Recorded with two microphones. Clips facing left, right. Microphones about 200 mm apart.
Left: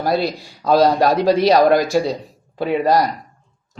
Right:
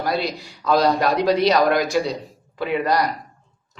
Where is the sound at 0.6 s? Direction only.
35° left (ahead or behind).